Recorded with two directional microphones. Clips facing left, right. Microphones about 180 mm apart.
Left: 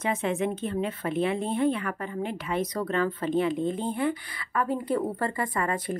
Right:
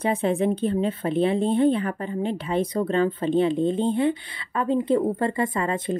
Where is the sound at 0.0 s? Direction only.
35° right (ahead or behind).